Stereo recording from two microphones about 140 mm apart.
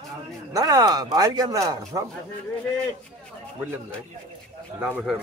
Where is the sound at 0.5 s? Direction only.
25° right (ahead or behind).